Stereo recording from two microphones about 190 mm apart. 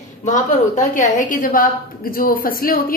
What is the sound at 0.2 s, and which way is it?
A woman's voice, 40° left (ahead or behind).